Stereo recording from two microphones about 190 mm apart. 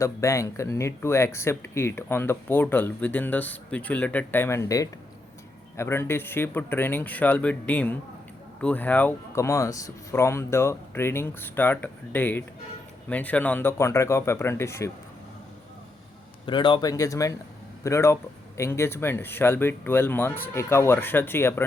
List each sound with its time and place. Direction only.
0.0 s speech: 15° left (ahead or behind)
16.5 s speech: 25° left (ahead or behind)